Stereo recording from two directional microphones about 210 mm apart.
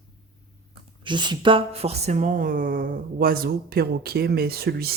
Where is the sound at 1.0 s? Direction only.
20° right (ahead or behind); by 4.9 s 50° right (ahead or behind).